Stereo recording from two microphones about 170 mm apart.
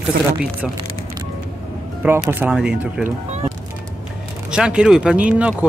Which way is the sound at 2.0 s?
10° right (ahead or behind).